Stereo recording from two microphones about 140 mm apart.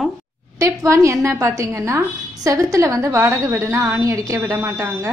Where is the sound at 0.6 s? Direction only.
20° right (ahead or behind).